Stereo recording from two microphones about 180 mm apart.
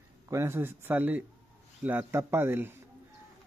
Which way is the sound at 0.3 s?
15° right (ahead or behind).